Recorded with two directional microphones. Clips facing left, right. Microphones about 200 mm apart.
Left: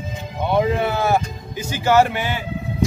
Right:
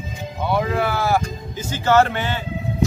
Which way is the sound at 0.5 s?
20° left (ahead or behind).